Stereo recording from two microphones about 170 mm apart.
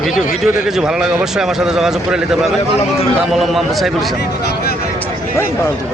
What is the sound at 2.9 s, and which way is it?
Speech, 35° left (ahead or behind).